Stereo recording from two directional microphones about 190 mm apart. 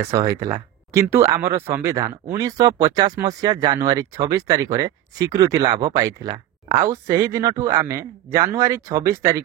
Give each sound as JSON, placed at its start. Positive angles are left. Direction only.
{"t": 0.1, "sound": "speech", "side_deg": -15}